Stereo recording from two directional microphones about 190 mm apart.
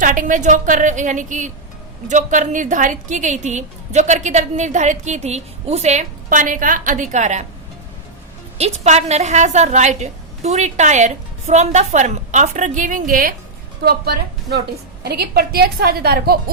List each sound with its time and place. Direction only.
0.0 s a woman's voice: 45° right (ahead or behind)
8.5 s a woman's voice: 35° right (ahead or behind); by 16.4 s 55° right (ahead or behind)